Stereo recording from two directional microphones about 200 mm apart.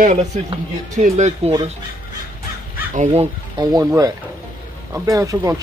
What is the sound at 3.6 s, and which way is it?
Speech, 15° right (ahead or behind).